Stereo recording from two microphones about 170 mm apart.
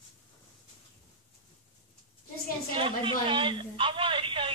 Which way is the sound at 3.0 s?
30° right (ahead or behind).